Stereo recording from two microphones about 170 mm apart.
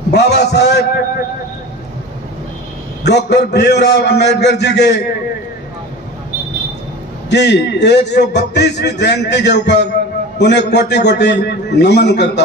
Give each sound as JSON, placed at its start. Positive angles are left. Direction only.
{"t": 0.1, "sound": "a man's voice", "side_deg": 80}
{"t": 3.0, "sound": "a man's voice", "side_deg": 80}
{"t": 7.2, "sound": "a man's voice", "side_deg": 85}